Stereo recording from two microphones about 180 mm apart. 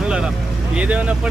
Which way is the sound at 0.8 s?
5° right (ahead or behind).